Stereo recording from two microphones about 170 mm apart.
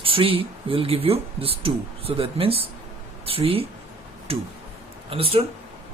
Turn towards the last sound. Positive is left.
turn(degrees=-35)  # may be behind; listen again after turning